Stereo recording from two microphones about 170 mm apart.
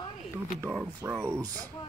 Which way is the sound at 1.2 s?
15° right (ahead or behind).